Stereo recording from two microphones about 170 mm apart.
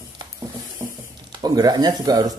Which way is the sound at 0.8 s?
15° right (ahead or behind).